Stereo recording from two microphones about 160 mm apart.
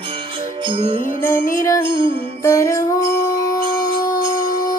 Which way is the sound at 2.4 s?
20° left (ahead or behind).